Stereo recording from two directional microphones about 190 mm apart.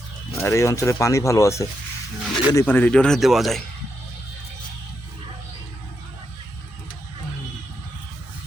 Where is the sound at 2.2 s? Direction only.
Centre (ahead or behind).